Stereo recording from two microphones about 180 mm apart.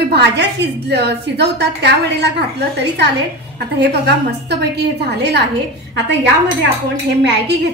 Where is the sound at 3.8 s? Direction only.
65° right (ahead or behind).